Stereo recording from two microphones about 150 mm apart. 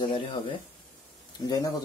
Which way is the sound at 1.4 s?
25° left (ahead or behind).